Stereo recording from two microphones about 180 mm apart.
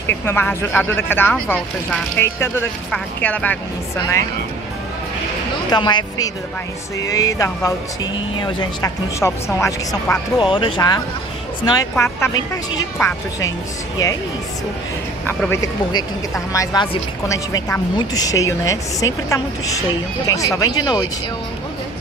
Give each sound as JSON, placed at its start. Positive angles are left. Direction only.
{"t": 0.0, "sound": "speech", "side_deg": 10}
{"t": 5.7, "sound": "speech", "side_deg": 25}
{"t": 10.4, "sound": "speech", "side_deg": 25}
{"t": 15.2, "sound": "speech", "side_deg": 15}